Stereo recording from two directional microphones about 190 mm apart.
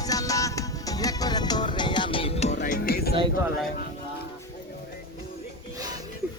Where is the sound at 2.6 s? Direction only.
55° left (ahead or behind).